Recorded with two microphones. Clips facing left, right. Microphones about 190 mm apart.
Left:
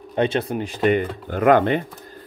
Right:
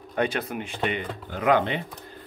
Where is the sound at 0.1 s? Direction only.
25° left (ahead or behind).